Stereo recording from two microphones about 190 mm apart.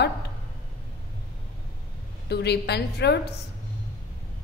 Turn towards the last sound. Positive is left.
turn(degrees=60)  # may be behind; listen again after turning